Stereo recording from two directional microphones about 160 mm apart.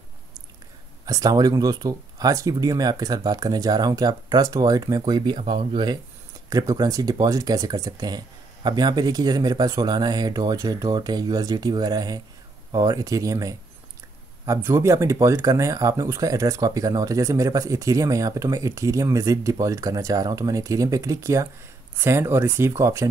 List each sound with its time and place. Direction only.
1.0 s speech: 25° right (ahead or behind)
5.4 s speech: 40° right (ahead or behind)
6.5 s speech: 25° right (ahead or behind)